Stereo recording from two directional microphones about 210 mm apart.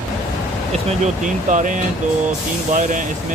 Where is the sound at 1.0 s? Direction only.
35° right (ahead or behind).